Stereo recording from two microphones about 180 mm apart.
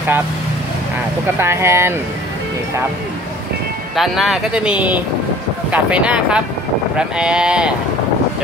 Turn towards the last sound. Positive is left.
turn(degrees=-5)  # may be behind; listen again after turning